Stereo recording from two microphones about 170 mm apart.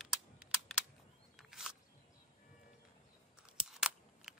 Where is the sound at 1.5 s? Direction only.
Centre (ahead or behind).